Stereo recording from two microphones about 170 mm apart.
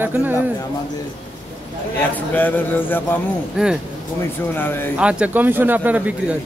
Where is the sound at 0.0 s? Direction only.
10° right (ahead or behind).